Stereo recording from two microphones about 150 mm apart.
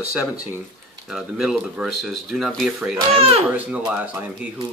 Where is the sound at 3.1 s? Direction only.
40° right (ahead or behind).